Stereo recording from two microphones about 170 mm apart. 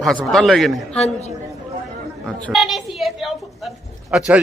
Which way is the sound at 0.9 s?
40° left (ahead or behind).